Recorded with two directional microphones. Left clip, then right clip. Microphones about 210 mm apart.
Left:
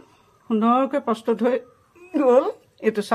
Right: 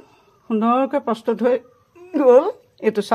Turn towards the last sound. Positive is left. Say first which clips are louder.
# right 3 dB
turn(degrees=-30)  # may be behind; listen again after turning